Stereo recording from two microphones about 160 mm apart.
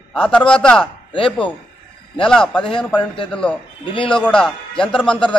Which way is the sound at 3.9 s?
30° left (ahead or behind).